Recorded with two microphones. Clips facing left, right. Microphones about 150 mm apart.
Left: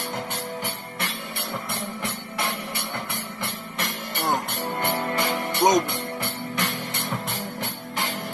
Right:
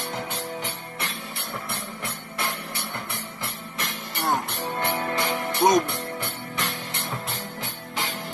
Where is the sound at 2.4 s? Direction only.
65° left (ahead or behind).